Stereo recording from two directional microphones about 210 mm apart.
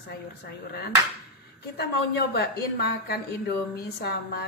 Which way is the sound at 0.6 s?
50° left (ahead or behind).